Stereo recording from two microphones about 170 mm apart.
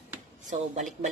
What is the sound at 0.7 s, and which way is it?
Speech, 40° right (ahead or behind).